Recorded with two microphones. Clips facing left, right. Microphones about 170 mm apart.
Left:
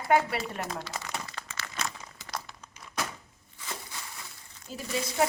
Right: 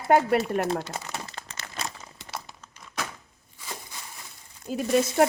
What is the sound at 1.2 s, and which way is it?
Crumpling, 30° right (ahead or behind).